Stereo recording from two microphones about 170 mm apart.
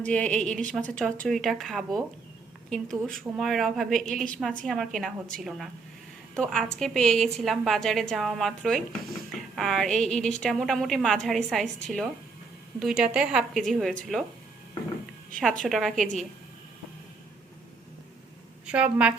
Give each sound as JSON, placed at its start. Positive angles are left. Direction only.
{"t": 0.0, "sound": "a woman's voice", "side_deg": 5}
{"t": 15.4, "sound": "a woman's voice", "side_deg": 5}
{"t": 18.6, "sound": "a woman's voice", "side_deg": -5}